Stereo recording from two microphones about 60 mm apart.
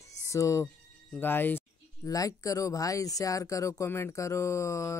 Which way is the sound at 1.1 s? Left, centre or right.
Left.